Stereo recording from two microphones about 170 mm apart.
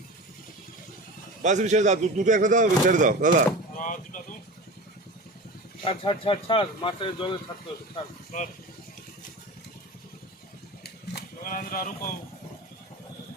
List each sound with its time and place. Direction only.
1.4 s speech: 45° right (ahead or behind)
3.8 s music: 50° left (ahead or behind)
5.8 s speech: 30° left (ahead or behind)
8.3 s speech: 50° left (ahead or behind)
10.8 s a sound: 60° left (ahead or behind)